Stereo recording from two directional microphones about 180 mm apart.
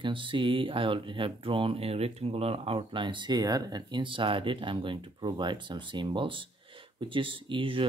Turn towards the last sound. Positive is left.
turn(degrees=-30)  # may be behind; listen again after turning